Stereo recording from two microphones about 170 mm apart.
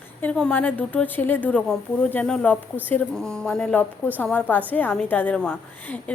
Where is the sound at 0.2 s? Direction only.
5° left (ahead or behind).